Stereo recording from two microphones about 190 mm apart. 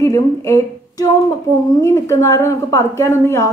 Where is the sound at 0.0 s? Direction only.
15° left (ahead or behind).